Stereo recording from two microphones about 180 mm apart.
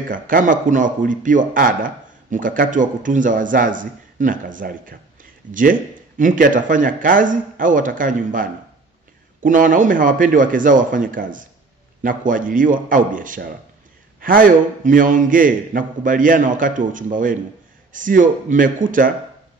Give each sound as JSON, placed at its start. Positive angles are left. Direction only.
{"t": 0.1, "sound": "a man's voice", "side_deg": -50}